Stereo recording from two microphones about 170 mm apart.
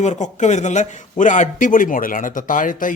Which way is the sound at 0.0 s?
45° left (ahead or behind).